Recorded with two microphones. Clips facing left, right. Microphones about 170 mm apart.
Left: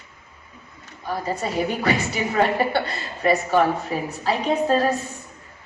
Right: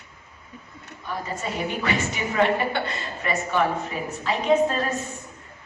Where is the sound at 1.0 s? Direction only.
35° left (ahead or behind).